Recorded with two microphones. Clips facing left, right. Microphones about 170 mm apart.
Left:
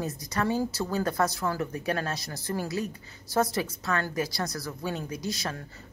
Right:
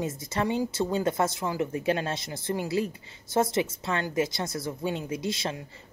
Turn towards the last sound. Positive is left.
turn(degrees=-25)  # may be behind; listen again after turning